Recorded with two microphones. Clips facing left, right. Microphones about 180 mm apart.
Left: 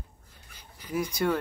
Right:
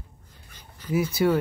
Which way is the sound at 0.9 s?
5° right (ahead or behind).